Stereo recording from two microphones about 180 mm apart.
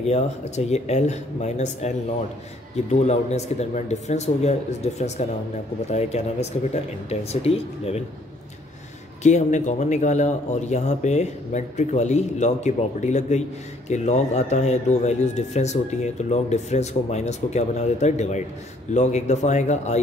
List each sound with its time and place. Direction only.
0.0 s speech: 35° left (ahead or behind)
9.2 s speech: 40° left (ahead or behind)